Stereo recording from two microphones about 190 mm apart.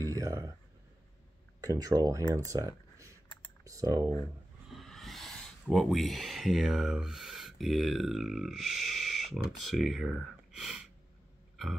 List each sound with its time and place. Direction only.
0.0 s a sound: 15° right (ahead or behind)
1.6 s speech: 20° right (ahead or behind)
4.7 s speech: centre (ahead or behind)